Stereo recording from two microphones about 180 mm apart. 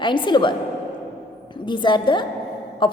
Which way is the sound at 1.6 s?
25° left (ahead or behind).